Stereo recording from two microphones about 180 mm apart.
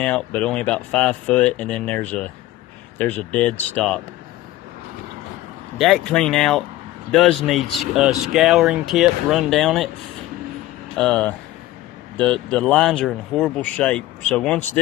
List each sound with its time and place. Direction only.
0.0 s speech: 5° left (ahead or behind)
5.8 s speech: centre (ahead or behind)
11.0 s speech: 5° left (ahead or behind)